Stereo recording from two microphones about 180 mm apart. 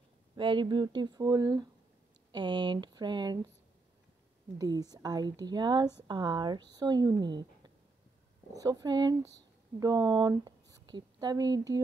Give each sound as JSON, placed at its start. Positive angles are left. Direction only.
{"t": 0.4, "sound": "speech", "side_deg": -25}
{"t": 4.6, "sound": "speech", "side_deg": -20}